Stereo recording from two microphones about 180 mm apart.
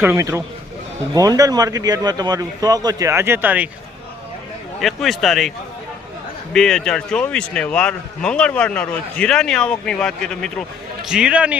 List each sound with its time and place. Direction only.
0.0 s a man's voice: 15° right (ahead or behind)
4.8 s speech: centre (ahead or behind)
6.5 s a man's voice: 5° left (ahead or behind)